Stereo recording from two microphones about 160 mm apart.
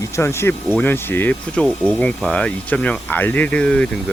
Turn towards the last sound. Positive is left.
turn(degrees=5)  # may be behind; listen again after turning